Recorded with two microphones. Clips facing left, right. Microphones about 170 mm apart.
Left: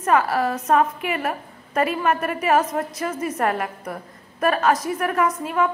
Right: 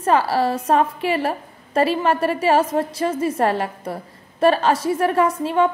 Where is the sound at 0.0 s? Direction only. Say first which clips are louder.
Right 2 dB; 30° right (ahead or behind).